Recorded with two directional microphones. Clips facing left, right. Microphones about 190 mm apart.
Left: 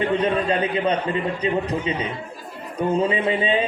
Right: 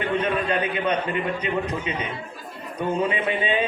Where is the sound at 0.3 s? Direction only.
30° left (ahead or behind).